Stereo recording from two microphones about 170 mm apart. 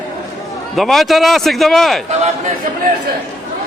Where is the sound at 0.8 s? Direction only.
Centre (ahead or behind).